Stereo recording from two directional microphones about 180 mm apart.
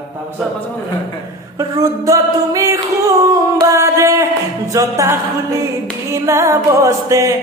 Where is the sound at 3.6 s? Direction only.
15° right (ahead or behind).